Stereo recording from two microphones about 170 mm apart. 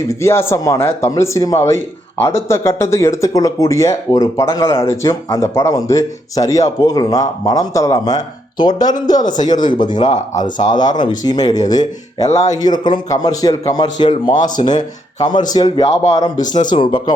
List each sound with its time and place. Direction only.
0.1 s speech: 15° left (ahead or behind)
9.2 s speech: 50° left (ahead or behind)
10.9 s speech: 25° left (ahead or behind)
12.3 s speech: 40° left (ahead or behind)
12.5 s speech: 25° left (ahead or behind)
14.3 s speech: 50° left (ahead or behind)
14.6 s speech: 25° left (ahead or behind)
16.4 s speech: 45° left (ahead or behind)
16.6 s speech: 30° left (ahead or behind)